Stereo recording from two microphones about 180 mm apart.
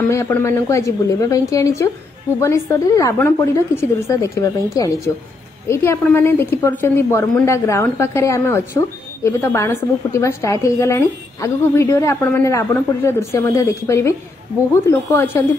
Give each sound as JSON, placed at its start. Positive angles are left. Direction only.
{"t": 0.1, "sound": "a woman's voice", "side_deg": 15}